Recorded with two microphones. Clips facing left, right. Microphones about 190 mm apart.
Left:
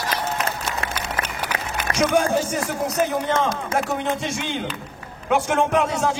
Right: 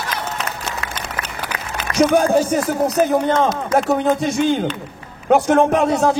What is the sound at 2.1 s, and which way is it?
Speech, 35° right (ahead or behind).